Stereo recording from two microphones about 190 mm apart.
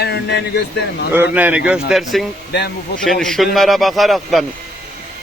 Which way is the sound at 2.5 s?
60° left (ahead or behind).